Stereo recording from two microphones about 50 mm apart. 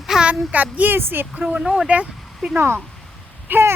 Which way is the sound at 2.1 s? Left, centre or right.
Centre.